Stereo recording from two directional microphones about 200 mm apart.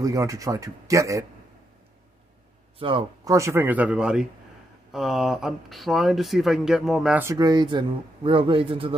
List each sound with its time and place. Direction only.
0.0 s speech: 15° right (ahead or behind)
2.8 s speech: 25° right (ahead or behind)
3.3 s speech: 15° right (ahead or behind)
7.2 s speech: 20° right (ahead or behind)